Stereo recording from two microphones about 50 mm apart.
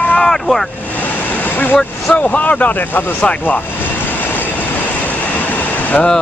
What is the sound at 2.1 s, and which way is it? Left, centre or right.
Speech, left.